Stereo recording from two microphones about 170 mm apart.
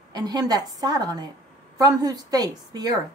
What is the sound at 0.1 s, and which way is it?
A woman's voice, 25° right (ahead or behind).